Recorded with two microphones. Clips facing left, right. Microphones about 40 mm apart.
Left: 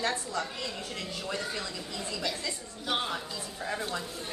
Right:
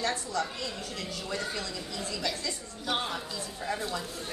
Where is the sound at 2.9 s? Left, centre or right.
Centre.